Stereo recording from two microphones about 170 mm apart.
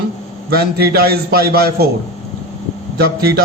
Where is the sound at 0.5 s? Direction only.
65° right (ahead or behind).